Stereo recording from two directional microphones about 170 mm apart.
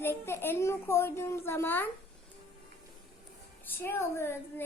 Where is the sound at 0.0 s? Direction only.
15° left (ahead or behind).